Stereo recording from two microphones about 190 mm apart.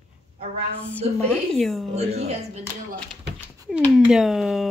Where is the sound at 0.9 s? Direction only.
5° left (ahead or behind).